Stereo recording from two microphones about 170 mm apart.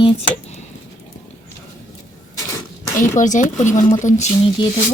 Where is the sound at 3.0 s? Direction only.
50° left (ahead or behind).